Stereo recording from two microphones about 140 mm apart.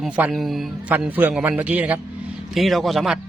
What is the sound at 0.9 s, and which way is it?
A man's voice, 15° right (ahead or behind).